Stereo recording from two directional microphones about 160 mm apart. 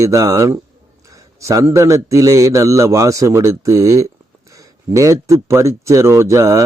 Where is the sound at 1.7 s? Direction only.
20° right (ahead or behind).